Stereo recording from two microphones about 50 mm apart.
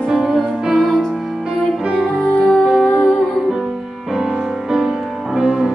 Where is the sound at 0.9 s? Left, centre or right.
Centre.